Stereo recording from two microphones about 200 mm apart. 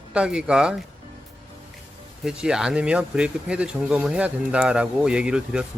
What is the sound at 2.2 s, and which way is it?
Speech, 5° right (ahead or behind).